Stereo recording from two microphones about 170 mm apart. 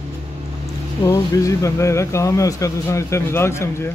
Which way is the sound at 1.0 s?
20° left (ahead or behind).